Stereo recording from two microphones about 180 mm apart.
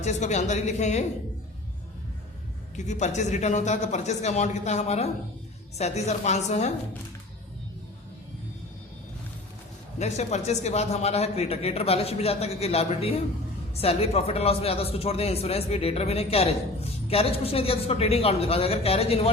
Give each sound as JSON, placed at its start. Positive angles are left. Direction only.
{"t": 0.0, "sound": "speech", "side_deg": 40}
{"t": 2.7, "sound": "speech", "side_deg": 40}
{"t": 10.0, "sound": "speech", "side_deg": 40}